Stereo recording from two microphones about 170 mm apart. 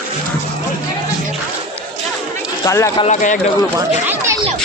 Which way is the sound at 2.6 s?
15° left (ahead or behind).